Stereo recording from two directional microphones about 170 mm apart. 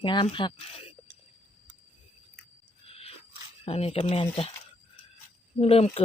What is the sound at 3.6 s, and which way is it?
Speech, 35° left (ahead or behind).